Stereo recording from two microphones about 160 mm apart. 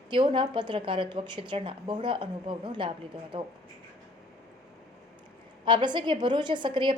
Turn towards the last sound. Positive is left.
turn(degrees=-30)  # may be behind; listen again after turning